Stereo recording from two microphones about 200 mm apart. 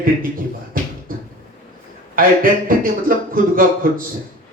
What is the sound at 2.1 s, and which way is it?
A man's voice, 45° right (ahead or behind).